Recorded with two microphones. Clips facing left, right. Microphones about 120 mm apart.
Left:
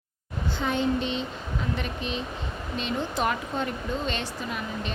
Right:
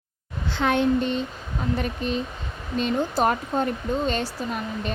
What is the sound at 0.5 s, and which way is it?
Speech, 65° right (ahead or behind).